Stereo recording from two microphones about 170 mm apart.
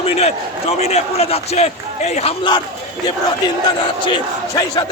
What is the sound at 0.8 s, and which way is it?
A man's voice, 40° left (ahead or behind).